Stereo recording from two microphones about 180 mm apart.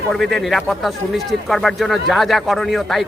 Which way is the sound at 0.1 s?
Centre (ahead or behind).